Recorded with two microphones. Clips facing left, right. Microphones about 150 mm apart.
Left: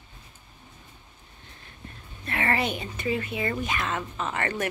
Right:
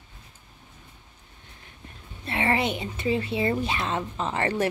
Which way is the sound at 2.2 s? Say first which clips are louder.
Right 2 dB; 20° right (ahead or behind).